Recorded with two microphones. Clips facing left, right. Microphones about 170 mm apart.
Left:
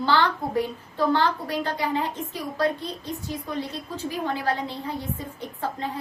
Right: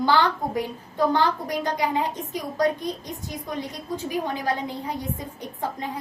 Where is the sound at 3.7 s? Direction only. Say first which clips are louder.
Right 3 dB; 15° right (ahead or behind).